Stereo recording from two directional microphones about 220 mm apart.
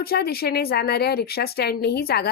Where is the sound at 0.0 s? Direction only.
45° left (ahead or behind).